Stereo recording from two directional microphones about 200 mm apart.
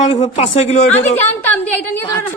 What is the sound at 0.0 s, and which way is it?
A woman's voice, 30° left (ahead or behind).